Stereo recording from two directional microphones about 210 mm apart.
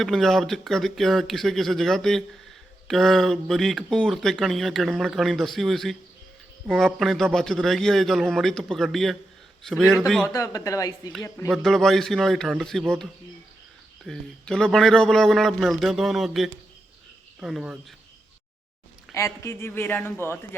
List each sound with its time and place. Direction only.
0.0 s speech: centre (ahead or behind)
10.2 s speech: 15° left (ahead or behind)
11.5 s speech: centre (ahead or behind)
14.0 s speech: 5° left (ahead or behind)
19.1 s speech: 15° left (ahead or behind)